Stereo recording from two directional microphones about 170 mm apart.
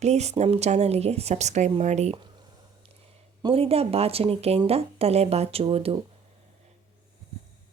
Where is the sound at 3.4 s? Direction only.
35° right (ahead or behind).